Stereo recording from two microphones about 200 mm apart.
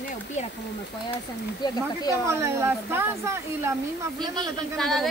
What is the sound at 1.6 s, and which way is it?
Speech, 20° left (ahead or behind).